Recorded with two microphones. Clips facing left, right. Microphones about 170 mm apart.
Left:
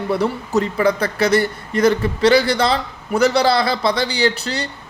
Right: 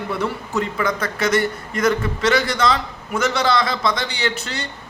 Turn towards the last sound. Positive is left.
turn(degrees=35)  # may be behind; listen again after turning